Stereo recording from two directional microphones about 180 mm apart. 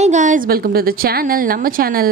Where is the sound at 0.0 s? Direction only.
45° right (ahead or behind).